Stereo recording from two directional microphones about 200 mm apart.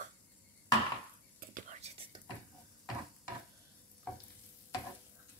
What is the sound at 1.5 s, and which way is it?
Whispering, 35° right (ahead or behind).